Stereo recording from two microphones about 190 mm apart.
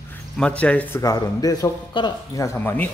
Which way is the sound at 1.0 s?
20° left (ahead or behind).